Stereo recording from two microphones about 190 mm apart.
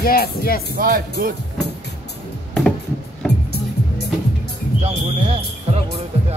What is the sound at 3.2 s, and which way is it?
Music, centre (ahead or behind).